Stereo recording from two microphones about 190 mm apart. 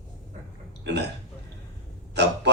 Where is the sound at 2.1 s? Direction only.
65° right (ahead or behind).